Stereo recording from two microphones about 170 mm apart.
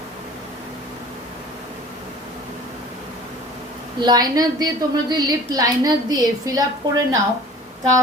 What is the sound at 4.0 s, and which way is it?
A woman's voice, 25° right (ahead or behind).